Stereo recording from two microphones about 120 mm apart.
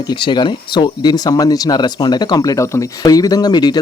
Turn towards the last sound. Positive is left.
turn(degrees=35)  # may be behind; listen again after turning